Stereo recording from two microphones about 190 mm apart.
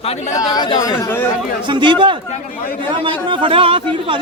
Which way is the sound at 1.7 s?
25° right (ahead or behind).